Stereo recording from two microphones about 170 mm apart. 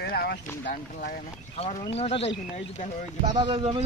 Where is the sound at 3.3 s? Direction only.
30° right (ahead or behind).